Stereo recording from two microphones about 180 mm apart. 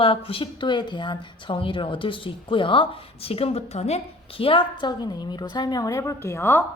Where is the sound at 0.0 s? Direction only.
30° left (ahead or behind); by 6.7 s 10° left (ahead or behind).